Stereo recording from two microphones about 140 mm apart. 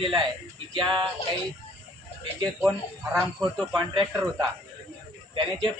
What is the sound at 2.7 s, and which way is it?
A woman's voice, 10° left (ahead or behind).